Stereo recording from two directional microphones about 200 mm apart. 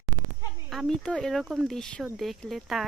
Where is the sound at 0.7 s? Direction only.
Centre (ahead or behind).